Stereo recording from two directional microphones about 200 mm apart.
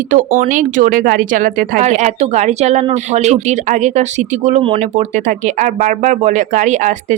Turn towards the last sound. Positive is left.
turn(degrees=-35)  # may be behind; listen again after turning